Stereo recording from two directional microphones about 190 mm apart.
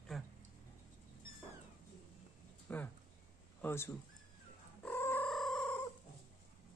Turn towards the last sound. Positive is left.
turn(degrees=5)  # may be behind; listen again after turning